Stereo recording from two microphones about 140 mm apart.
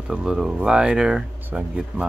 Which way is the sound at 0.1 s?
5° right (ahead or behind).